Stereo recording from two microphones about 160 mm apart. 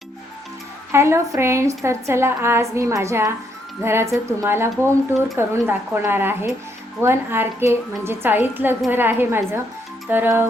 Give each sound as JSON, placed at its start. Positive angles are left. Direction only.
{"t": 0.9, "sound": "a woman's voice", "side_deg": -15}